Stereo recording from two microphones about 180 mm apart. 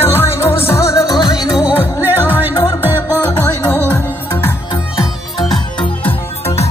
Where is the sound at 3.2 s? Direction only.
10° left (ahead or behind).